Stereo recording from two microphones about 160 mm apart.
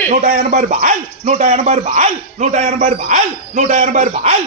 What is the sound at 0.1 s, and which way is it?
Speech, 60° right (ahead or behind).